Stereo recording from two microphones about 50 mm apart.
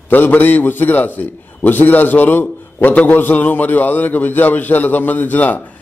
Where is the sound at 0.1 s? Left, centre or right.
Left.